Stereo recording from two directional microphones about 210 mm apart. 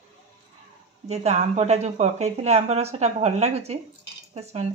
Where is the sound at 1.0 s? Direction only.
30° right (ahead or behind).